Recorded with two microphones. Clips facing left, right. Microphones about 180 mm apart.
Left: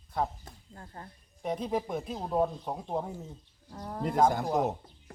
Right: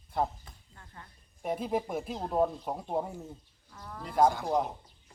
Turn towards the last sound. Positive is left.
turn(degrees=50)  # may be behind; listen again after turning